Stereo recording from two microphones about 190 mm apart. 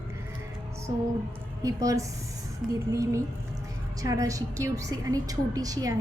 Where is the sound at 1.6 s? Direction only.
15° right (ahead or behind).